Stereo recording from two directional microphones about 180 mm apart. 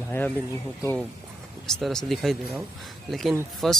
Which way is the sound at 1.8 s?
Centre (ahead or behind).